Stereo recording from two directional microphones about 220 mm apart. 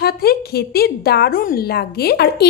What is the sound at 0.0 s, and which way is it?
A woman's voice, 45° left (ahead or behind).